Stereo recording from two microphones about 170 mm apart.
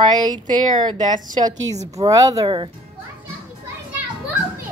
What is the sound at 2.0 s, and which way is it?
Speech, 20° right (ahead or behind).